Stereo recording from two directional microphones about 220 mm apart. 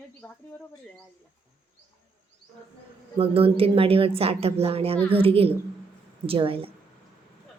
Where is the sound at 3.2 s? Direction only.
25° right (ahead or behind).